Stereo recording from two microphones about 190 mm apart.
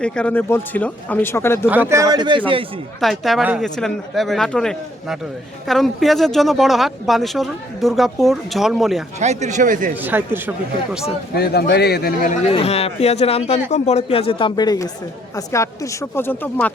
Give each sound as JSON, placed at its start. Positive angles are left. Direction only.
{"t": 0.0, "sound": "speech", "side_deg": 5}
{"t": 1.7, "sound": "speech", "side_deg": -10}
{"t": 3.0, "sound": "speech", "side_deg": 0}
{"t": 9.2, "sound": "speech", "side_deg": -35}
{"t": 10.0, "sound": "speech", "side_deg": -10}
{"t": 11.3, "sound": "a man's voice", "side_deg": 60}
{"t": 12.5, "sound": "a man's voice", "side_deg": 30}